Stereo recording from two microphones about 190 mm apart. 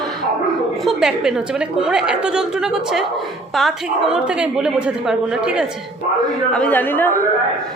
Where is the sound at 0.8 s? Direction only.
Centre (ahead or behind).